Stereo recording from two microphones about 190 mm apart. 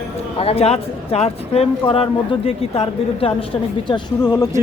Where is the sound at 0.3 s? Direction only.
30° left (ahead or behind).